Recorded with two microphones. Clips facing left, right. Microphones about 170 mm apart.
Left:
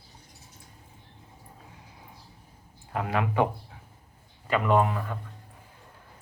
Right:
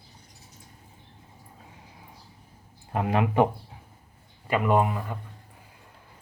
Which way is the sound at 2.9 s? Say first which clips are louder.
Right 3 dB; 25° right (ahead or behind).